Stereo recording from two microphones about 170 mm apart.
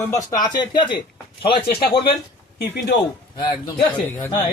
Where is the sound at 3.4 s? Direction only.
25° left (ahead or behind).